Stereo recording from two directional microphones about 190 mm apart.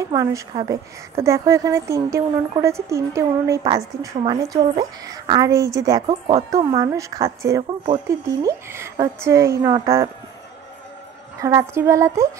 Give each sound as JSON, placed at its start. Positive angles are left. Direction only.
{"t": 0.1, "sound": "a woman's voice", "side_deg": -20}
{"t": 11.4, "sound": "a woman's voice", "side_deg": -15}